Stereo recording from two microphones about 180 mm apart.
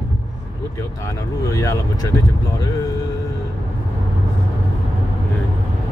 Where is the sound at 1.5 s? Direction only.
15° left (ahead or behind).